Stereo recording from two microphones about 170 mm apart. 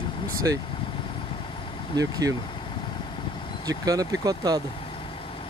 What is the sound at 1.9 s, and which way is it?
Speech, 20° right (ahead or behind).